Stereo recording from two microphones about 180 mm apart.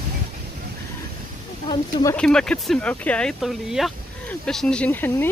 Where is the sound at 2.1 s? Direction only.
5° left (ahead or behind).